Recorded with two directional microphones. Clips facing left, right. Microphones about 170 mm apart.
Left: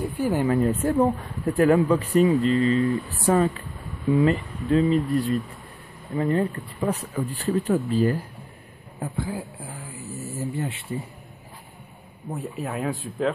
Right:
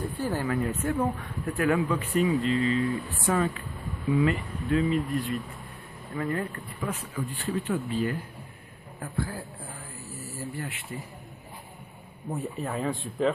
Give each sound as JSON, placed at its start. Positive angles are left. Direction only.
{"t": 0.0, "sound": "speech", "side_deg": 15}
{"t": 0.5, "sound": "speech", "side_deg": 35}
{"t": 6.1, "sound": "speech", "side_deg": 25}
{"t": 6.9, "sound": "speech", "side_deg": 40}
{"t": 9.0, "sound": "a man's voice", "side_deg": 20}
{"t": 12.3, "sound": "speech", "side_deg": 5}